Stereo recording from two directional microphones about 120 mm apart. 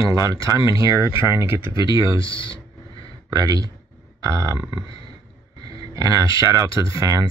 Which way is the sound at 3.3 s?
30° right (ahead or behind).